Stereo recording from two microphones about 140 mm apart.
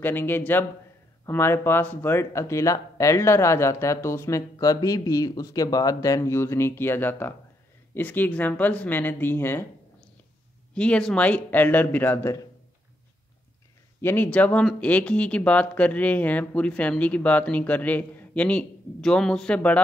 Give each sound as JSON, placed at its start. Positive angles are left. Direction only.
{"t": 0.0, "sound": "speech", "side_deg": 15}
{"t": 10.7, "sound": "speech", "side_deg": 10}
{"t": 14.0, "sound": "speech", "side_deg": 15}